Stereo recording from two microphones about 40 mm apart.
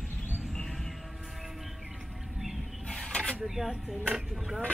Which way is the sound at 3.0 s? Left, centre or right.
Left.